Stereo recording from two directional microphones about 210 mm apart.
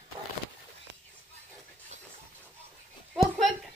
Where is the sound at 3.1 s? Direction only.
Centre (ahead or behind).